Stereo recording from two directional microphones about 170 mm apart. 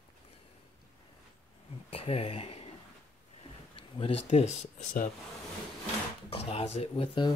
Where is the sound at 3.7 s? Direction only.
35° left (ahead or behind); by 5.1 s 50° left (ahead or behind).